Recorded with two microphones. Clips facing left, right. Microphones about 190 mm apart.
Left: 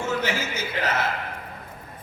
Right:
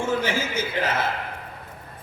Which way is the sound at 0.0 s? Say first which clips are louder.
Right 2 dB; 30° right (ahead or behind).